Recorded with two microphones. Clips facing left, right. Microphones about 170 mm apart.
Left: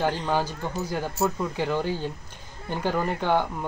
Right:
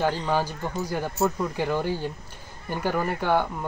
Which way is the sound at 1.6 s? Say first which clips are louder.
Even; 10° right (ahead or behind).